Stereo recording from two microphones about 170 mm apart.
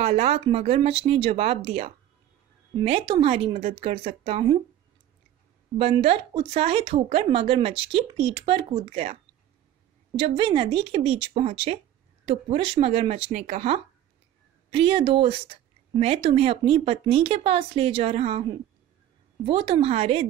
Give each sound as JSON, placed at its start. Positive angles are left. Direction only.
{"t": 0.0, "sound": "speech", "side_deg": -40}
{"t": 5.8, "sound": "speech", "side_deg": -35}
{"t": 14.7, "sound": "speech", "side_deg": -30}